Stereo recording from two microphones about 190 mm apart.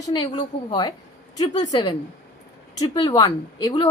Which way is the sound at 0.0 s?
25° left (ahead or behind).